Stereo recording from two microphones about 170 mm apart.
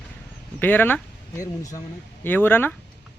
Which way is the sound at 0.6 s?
10° left (ahead or behind).